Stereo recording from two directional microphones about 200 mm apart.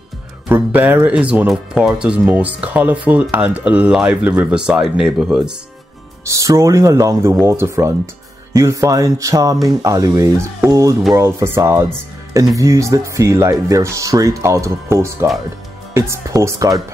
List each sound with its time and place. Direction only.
0.5 s speech: 10° right (ahead or behind)
6.2 s speech: 15° right (ahead or behind)